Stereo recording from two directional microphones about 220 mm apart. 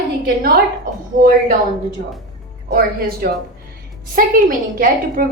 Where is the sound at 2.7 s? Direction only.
45° right (ahead or behind).